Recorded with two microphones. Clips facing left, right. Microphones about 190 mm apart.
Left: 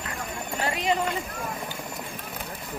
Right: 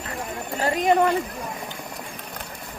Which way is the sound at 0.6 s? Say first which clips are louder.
Right 6 dB; 40° right (ahead or behind).